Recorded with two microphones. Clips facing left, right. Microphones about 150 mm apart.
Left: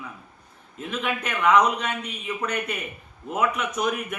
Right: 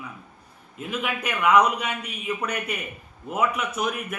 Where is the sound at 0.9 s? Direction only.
5° right (ahead or behind).